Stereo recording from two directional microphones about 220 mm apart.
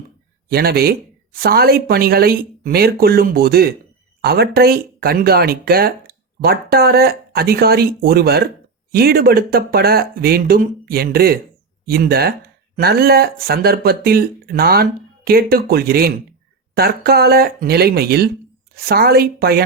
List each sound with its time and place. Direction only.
0.5 s speech: 45° right (ahead or behind)